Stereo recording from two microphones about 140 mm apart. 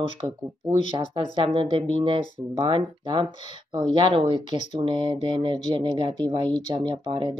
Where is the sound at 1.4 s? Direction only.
40° right (ahead or behind).